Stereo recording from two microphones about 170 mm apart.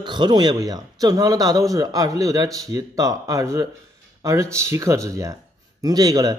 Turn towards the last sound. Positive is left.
turn(degrees=-20)  # may be behind; listen again after turning